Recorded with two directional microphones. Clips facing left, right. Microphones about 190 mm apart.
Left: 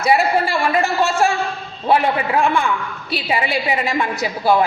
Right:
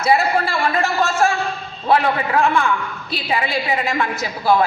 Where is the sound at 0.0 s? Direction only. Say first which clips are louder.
Left 1 dB; 15° left (ahead or behind).